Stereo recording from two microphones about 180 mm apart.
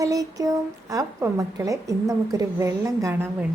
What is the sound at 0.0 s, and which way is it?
A woman's voice, 20° right (ahead or behind).